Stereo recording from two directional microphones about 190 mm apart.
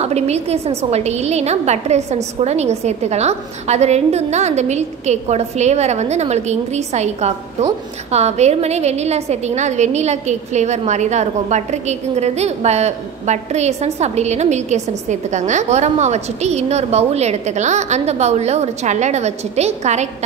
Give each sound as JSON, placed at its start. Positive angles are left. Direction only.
{"t": 0.0, "sound": "a woman's voice", "side_deg": -35}